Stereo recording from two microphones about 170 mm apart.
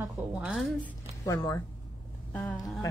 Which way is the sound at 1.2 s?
20° left (ahead or behind).